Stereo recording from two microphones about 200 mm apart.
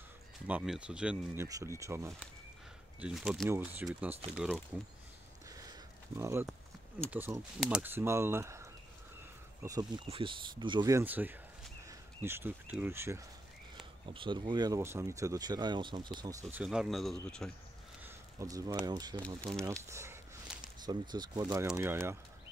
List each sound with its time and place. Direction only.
0.5 s speech: 5° right (ahead or behind)
3.0 s speech: 5° right (ahead or behind)
5.5 s a sound: 15° right (ahead or behind)
7.1 s speech: 10° right (ahead or behind)
13.7 s speech: 25° right (ahead or behind)
16.6 s speech: 5° right (ahead or behind)
18.0 s speech: 15° right (ahead or behind)